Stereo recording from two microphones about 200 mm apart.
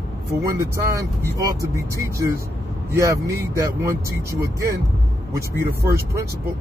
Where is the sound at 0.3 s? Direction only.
15° right (ahead or behind).